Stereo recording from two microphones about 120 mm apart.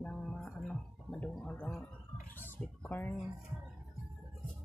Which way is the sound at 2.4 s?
15° left (ahead or behind).